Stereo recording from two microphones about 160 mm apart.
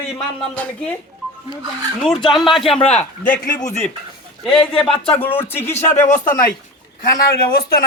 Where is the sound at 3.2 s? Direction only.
60° left (ahead or behind).